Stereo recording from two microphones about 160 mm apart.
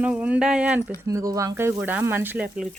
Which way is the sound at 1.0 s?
20° right (ahead or behind).